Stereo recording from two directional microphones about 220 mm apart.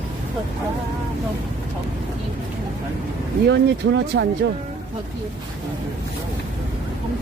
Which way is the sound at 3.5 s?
50° right (ahead or behind).